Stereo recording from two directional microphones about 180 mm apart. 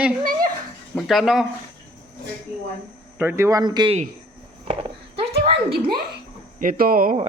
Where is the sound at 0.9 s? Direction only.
Centre (ahead or behind).